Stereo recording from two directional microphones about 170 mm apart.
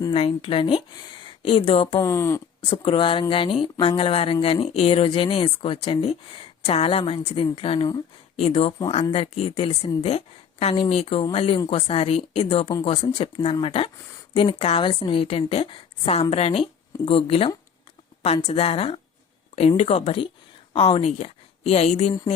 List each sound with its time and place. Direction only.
0.1 s speech: 35° left (ahead or behind)
2.0 s speech: 15° left (ahead or behind)
2.6 s a woman's voice: 30° left (ahead or behind)